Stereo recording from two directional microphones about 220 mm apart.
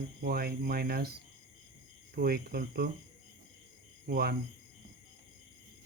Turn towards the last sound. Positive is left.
turn(degrees=-45)  # may be behind; listen again after turning